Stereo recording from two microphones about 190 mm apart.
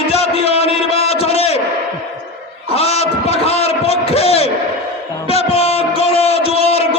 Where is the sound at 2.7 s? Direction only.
35° left (ahead or behind).